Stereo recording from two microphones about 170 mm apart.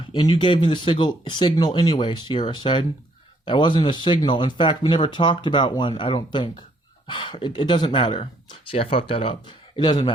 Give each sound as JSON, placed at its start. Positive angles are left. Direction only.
{"t": 0.0, "sound": "speech", "side_deg": 25}